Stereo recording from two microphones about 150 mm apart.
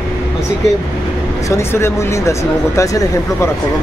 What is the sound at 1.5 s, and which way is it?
Speech, 20° left (ahead or behind).